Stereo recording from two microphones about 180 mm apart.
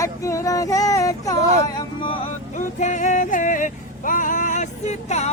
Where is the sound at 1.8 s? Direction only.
30° left (ahead or behind).